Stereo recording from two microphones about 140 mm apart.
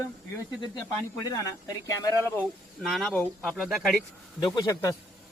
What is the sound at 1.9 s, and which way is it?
Speech, 25° left (ahead or behind).